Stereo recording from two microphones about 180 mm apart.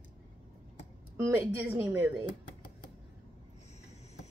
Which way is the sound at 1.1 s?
15° right (ahead or behind).